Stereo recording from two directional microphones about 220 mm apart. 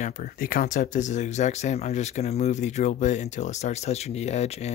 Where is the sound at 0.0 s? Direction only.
40° left (ahead or behind).